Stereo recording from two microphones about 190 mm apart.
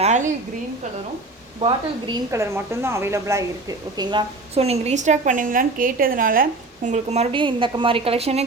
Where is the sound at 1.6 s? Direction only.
25° right (ahead or behind).